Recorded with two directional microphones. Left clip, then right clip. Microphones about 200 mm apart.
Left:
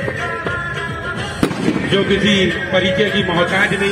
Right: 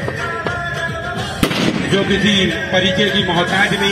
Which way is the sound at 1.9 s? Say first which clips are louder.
Left 1 dB; 55° right (ahead or behind).